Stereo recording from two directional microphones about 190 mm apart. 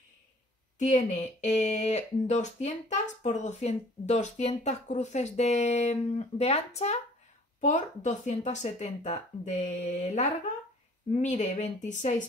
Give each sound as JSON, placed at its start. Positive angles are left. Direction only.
{"t": 0.7, "sound": "speech", "side_deg": 40}